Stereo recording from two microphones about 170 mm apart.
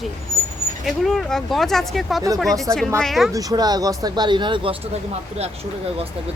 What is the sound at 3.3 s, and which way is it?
Speech, 20° right (ahead or behind).